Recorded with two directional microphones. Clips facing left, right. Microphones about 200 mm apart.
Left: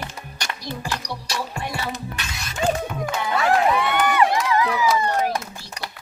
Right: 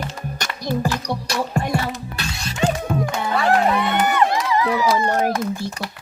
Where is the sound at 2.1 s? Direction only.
30° right (ahead or behind).